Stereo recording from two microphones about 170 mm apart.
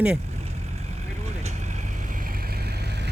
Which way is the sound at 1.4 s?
40° right (ahead or behind).